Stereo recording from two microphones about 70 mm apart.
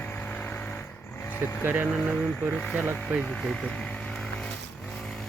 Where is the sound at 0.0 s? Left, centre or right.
Left.